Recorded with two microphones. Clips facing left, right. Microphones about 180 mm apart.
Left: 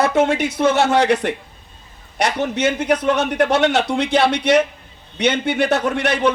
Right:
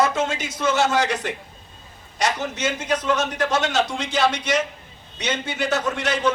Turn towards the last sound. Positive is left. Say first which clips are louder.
# left 5 dB
turn(degrees=65)  # may be behind; listen again after turning